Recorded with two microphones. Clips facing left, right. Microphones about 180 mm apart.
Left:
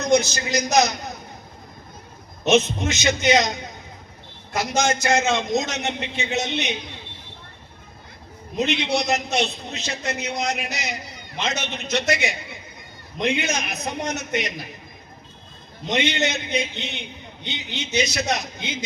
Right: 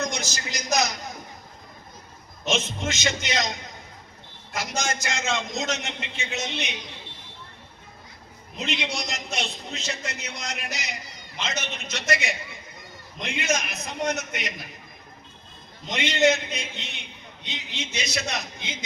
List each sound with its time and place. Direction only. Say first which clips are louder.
0.1 s a man's voice: left 13 dB; 65° left (ahead or behind)
2.4 s a man's voice: left 8 dB; 65° left (ahead or behind)
8.5 s a man's voice: left 8 dB; 65° left (ahead or behind)
15.9 s a man's voice: right 1 dB; 65° left (ahead or behind)